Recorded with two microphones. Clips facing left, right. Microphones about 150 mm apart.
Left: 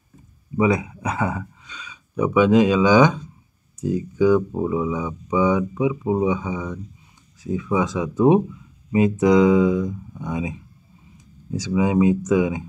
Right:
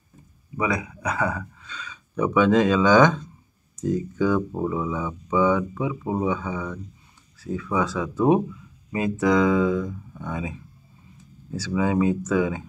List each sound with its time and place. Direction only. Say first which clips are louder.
0.6 s speech: left 6 dB; 25° left (ahead or behind)